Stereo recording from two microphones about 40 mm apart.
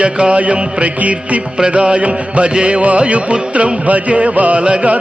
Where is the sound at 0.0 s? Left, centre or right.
Right.